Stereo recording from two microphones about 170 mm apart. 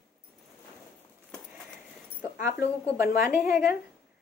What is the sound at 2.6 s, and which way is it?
Speech, 15° right (ahead or behind).